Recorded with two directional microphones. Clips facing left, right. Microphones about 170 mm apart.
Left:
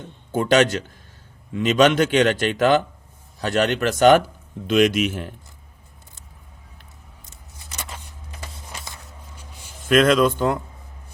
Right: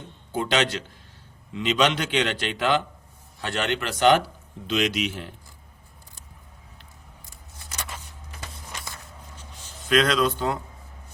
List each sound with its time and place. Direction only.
0.3 s speech: 45° left (ahead or behind)
9.4 s a sound: 10° left (ahead or behind)
9.8 s speech: 50° left (ahead or behind)